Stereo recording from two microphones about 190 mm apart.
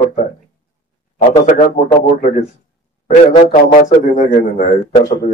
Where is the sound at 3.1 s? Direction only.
40° left (ahead or behind).